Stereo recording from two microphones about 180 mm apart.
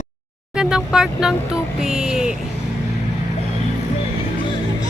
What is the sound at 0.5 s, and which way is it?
Speech, 5° right (ahead or behind).